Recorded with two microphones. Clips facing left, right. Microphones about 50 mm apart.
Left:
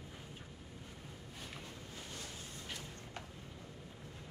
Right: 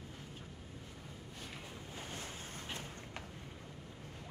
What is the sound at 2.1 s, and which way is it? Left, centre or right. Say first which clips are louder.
Waves: right 2 dB; right.